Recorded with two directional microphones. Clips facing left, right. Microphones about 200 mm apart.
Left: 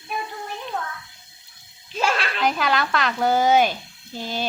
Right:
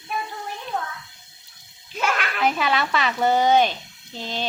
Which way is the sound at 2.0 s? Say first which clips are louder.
Left 2 dB; 30° left (ahead or behind).